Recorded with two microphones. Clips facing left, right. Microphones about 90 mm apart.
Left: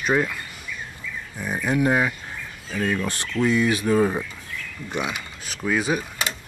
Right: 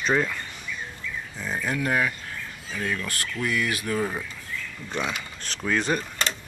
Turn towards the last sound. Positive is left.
turn(degrees=10)  # may be behind; listen again after turning